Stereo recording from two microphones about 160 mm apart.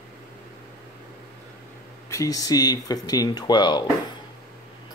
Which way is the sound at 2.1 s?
20° left (ahead or behind).